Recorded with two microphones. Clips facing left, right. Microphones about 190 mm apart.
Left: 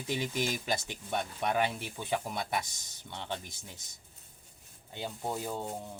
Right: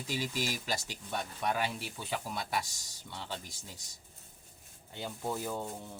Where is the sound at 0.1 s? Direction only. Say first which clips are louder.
Left 3 dB; 25° left (ahead or behind).